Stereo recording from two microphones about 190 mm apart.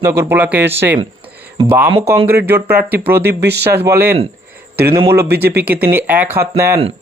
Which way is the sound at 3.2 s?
60° right (ahead or behind).